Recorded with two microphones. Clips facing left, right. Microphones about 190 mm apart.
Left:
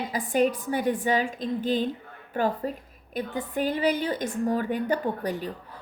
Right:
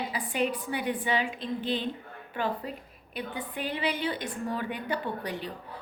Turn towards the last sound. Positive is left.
turn(degrees=45)  # may be behind; listen again after turning